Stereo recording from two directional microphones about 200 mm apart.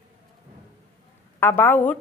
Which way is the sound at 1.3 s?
10° left (ahead or behind).